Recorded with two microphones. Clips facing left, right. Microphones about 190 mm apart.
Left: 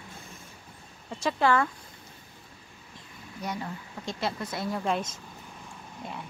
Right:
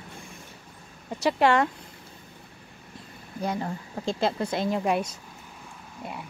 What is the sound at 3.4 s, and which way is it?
Speech, 35° right (ahead or behind).